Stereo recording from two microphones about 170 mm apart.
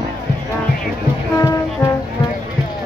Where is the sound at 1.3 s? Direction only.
20° left (ahead or behind).